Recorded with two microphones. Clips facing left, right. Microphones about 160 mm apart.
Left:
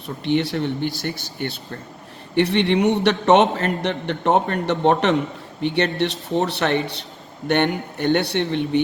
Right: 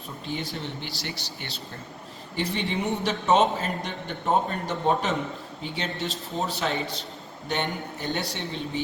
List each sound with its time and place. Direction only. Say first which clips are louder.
0.3 s speech: left 12 dB; 75° left (ahead or behind); by 1.5 s 50° left (ahead or behind)
2.3 s a man's voice: left 11 dB; 70° left (ahead or behind)